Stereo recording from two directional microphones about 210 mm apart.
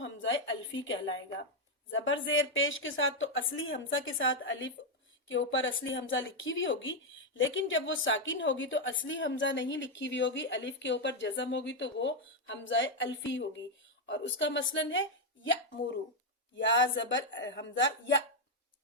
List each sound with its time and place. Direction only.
0.0 s a sound: 60° left (ahead or behind)
1.9 s a woman's voice: 65° left (ahead or behind)
16.6 s a woman's voice: 60° left (ahead or behind)